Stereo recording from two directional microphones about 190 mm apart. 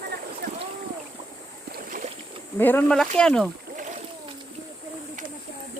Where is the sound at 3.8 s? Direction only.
40° right (ahead or behind).